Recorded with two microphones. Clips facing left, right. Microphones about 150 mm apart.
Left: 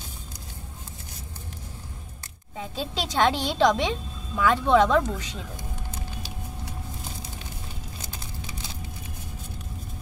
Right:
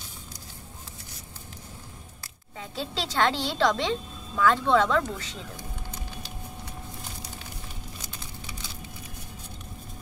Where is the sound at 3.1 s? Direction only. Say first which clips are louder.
Left 3 dB; 15° left (ahead or behind).